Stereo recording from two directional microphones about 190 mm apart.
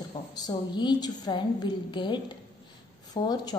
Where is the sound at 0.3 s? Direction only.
20° left (ahead or behind).